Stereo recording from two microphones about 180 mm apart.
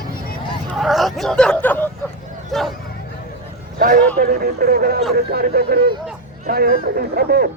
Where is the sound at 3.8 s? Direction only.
50° right (ahead or behind).